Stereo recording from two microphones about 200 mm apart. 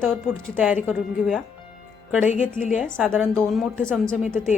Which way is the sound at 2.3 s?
40° left (ahead or behind).